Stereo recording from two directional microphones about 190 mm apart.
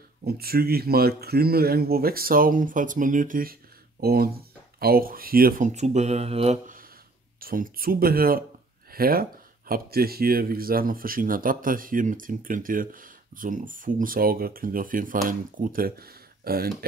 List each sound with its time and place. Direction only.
0.2 s speech: 55° right (ahead or behind); by 6.6 s 30° right (ahead or behind)
7.3 s speech: 50° right (ahead or behind)